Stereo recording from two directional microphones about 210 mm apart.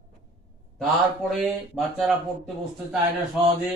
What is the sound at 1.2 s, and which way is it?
Speech, centre (ahead or behind).